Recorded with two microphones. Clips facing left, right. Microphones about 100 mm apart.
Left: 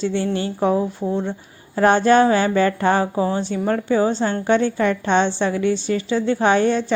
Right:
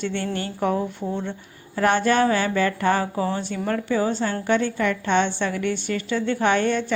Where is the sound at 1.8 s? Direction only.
45° left (ahead or behind).